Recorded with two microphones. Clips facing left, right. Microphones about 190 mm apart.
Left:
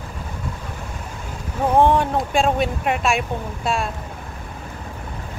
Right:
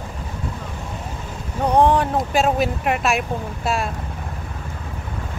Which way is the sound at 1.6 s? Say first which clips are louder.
Even; centre (ahead or behind).